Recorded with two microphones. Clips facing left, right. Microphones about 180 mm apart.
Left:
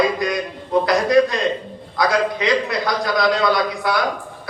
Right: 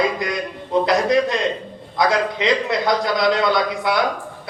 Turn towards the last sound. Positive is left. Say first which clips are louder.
# even
turn(degrees=-25)  # may be behind; listen again after turning